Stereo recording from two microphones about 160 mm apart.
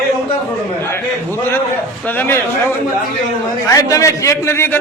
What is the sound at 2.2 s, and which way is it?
Speech, 15° left (ahead or behind).